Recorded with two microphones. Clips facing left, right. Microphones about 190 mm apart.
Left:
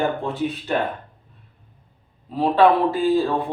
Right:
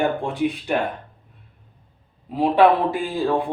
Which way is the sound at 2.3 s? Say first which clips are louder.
Even; 15° right (ahead or behind).